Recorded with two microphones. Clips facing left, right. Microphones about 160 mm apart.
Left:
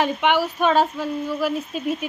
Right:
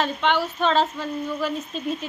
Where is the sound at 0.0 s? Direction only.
10° left (ahead or behind).